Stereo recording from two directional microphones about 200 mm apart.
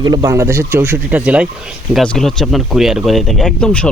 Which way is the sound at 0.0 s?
20° right (ahead or behind).